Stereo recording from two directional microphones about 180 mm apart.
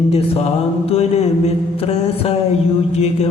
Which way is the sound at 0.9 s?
35° left (ahead or behind).